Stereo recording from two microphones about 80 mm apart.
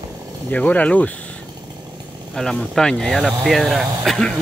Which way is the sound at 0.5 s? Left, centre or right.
Centre.